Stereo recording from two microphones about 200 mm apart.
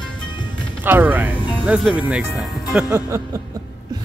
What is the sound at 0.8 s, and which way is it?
Speech, 10° right (ahead or behind).